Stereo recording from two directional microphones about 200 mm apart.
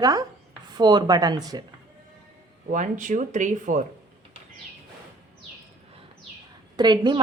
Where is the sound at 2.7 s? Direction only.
40° right (ahead or behind).